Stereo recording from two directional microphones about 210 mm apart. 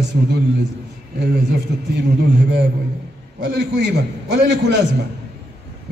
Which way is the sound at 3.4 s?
55° right (ahead or behind).